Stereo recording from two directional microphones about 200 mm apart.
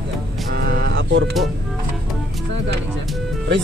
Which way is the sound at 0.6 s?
55° right (ahead or behind).